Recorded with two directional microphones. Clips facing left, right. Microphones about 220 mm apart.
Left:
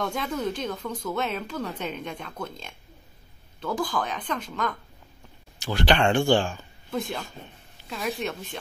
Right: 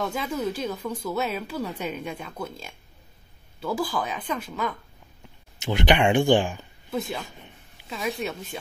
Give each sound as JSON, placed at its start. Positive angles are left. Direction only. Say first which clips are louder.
{"t": 0.0, "sound": "speech", "louder": "right 1 dB", "side_deg": -5}
{"t": 5.6, "sound": "speech", "louder": "right 1 dB", "side_deg": -20}
{"t": 6.9, "sound": "a woman's voice", "louder": "right 1 dB", "side_deg": -5}